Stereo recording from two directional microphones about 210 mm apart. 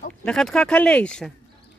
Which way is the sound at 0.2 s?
5° left (ahead or behind).